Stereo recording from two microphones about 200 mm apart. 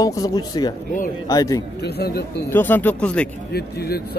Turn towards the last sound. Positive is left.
turn(degrees=50)  # may be behind; listen again after turning